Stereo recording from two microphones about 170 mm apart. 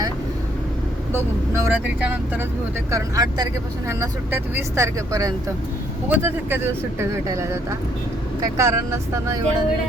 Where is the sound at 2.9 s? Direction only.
20° right (ahead or behind).